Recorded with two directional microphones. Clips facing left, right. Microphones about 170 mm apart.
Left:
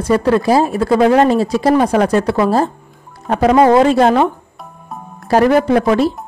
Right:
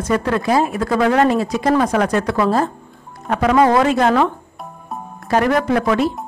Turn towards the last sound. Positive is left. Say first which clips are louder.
# left 4 dB
turn(degrees=30)  # may be behind; listen again after turning